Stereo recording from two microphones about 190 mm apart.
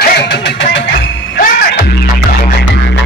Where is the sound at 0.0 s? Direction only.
60° left (ahead or behind).